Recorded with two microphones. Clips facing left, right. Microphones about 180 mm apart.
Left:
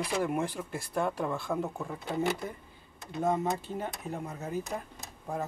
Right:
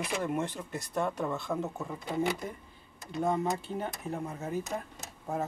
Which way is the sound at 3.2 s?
20° left (ahead or behind).